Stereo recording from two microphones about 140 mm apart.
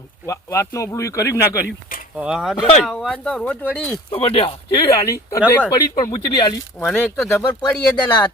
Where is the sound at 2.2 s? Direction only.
5° right (ahead or behind).